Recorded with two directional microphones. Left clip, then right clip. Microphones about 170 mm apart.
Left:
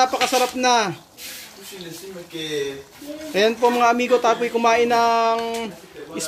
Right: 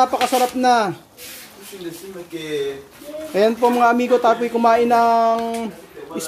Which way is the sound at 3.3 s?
10° right (ahead or behind).